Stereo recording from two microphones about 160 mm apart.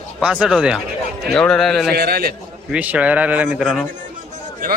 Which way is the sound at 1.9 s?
80° right.